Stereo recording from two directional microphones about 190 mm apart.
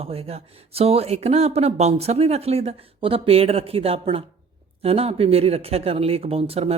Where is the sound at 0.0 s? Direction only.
30° right (ahead or behind).